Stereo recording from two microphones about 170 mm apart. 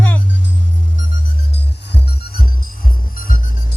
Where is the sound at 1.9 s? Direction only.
65° left (ahead or behind).